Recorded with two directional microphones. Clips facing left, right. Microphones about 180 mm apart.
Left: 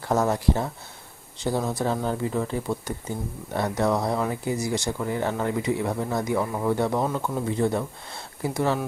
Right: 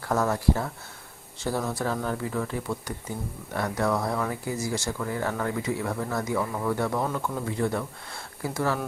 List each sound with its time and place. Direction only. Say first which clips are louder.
0.0 s speech: left 2 dB; 20° left (ahead or behind)